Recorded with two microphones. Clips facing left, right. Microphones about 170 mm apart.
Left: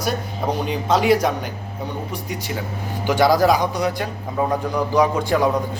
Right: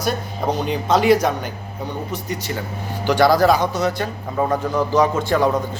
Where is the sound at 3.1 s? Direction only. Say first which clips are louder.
Right 1 dB; 20° left (ahead or behind).